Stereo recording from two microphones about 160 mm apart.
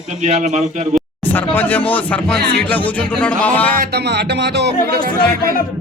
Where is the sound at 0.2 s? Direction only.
50° right (ahead or behind).